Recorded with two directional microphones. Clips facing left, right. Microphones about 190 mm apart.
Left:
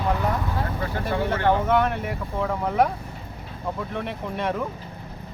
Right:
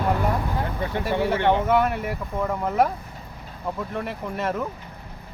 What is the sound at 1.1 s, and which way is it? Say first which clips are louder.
Speech: right 2 dB; 10° right (ahead or behind).